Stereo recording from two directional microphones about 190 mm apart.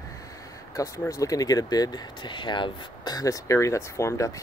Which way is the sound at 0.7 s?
20° left (ahead or behind).